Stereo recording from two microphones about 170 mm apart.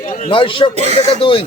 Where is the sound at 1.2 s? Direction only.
30° left (ahead or behind).